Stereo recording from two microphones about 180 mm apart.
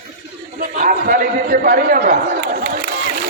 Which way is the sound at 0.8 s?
50° right (ahead or behind).